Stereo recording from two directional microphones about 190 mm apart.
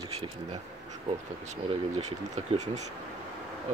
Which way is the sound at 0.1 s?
30° right (ahead or behind).